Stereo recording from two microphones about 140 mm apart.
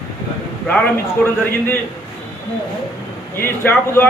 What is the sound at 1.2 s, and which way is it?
Speech, 15° left (ahead or behind).